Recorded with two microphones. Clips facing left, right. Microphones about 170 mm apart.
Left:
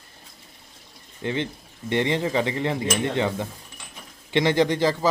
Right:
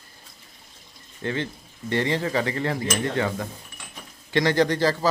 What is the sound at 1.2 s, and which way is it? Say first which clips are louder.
Speech: left 1 dB; 20° left (ahead or behind).